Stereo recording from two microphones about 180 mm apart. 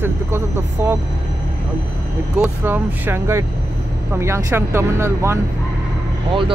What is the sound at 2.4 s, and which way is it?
Speech, 10° right (ahead or behind).